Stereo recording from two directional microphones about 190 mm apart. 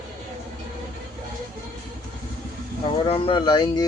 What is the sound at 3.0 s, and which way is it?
Speech, 25° left (ahead or behind).